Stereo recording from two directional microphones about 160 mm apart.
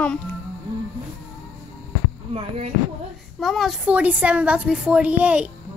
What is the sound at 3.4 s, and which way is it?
A woman's voice, centre (ahead or behind).